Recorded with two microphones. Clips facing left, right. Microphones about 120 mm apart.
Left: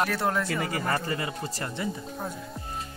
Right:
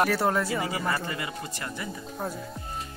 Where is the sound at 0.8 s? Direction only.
40° left (ahead or behind).